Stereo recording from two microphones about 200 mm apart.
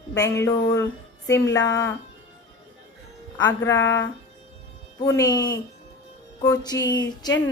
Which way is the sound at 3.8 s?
65° left (ahead or behind).